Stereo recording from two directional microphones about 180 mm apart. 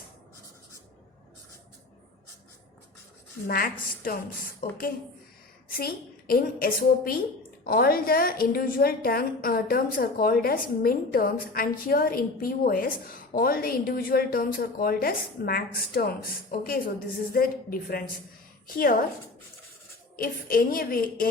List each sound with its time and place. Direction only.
3.4 s a woman's voice: 55° left (ahead or behind)
5.6 s a woman's voice: 55° left (ahead or behind)
20.1 s a woman's voice: 55° left (ahead or behind)